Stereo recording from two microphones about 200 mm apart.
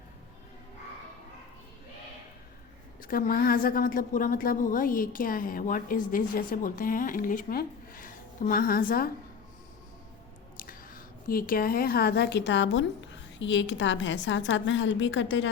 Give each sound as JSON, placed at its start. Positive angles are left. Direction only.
{"t": 3.0, "sound": "a woman's voice", "side_deg": 45}
{"t": 10.6, "sound": "a woman's voice", "side_deg": 45}